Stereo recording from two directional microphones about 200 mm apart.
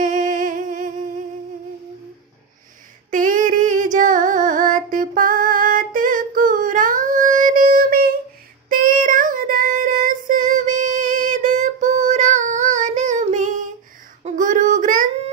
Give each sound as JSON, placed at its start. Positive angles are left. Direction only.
{"t": 0.0, "sound": "humming", "side_deg": -40}
{"t": 3.1, "sound": "female singing", "side_deg": -40}
{"t": 8.6, "sound": "child singing", "side_deg": -40}